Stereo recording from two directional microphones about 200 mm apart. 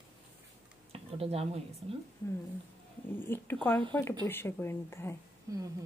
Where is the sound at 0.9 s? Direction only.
30° right (ahead or behind).